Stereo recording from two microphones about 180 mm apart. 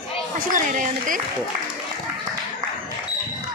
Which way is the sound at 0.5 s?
45° right (ahead or behind).